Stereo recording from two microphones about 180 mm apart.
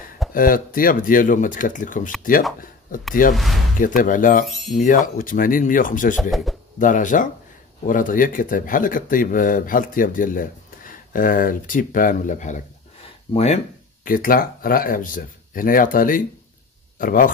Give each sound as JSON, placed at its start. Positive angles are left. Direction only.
{"t": 0.3, "sound": "speech", "side_deg": 50}
{"t": 3.2, "sound": "speech", "side_deg": 50}
{"t": 6.5, "sound": "pigeon", "side_deg": 0}
{"t": 6.8, "sound": "speech", "side_deg": 45}
{"t": 14.0, "sound": "speech", "side_deg": 50}